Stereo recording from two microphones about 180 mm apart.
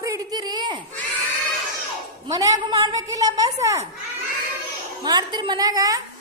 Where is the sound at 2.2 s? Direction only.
20° right (ahead or behind).